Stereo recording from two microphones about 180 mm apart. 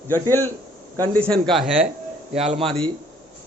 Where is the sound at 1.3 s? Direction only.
Centre (ahead or behind).